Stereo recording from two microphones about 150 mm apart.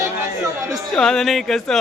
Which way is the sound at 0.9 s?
5° left (ahead or behind).